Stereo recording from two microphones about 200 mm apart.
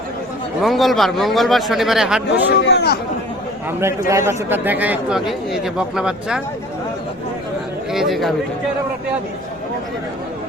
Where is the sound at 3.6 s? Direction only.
15° right (ahead or behind).